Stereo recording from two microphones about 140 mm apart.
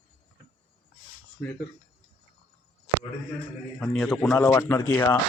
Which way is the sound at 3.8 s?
5° left (ahead or behind).